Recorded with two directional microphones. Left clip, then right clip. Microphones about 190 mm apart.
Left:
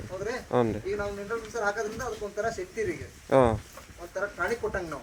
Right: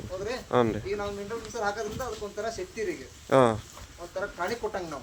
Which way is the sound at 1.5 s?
20° right (ahead or behind).